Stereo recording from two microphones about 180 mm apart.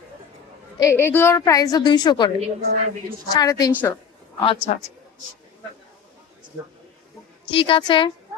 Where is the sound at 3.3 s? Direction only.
20° left (ahead or behind).